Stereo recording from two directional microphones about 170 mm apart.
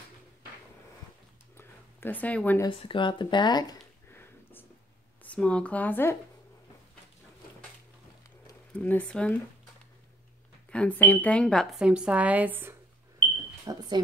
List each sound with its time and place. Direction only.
1.6 s a sound: 10° left (ahead or behind)
2.7 s speech: 30° left (ahead or behind)
4.1 s a sound: 10° left (ahead or behind)
5.2 s speech: 5° left (ahead or behind)
8.7 s speech: 10° left (ahead or behind)
10.7 s a woman's voice: 10° left (ahead or behind); by 12.7 s 10° right (ahead or behind)
13.7 s speech: 25° right (ahead or behind)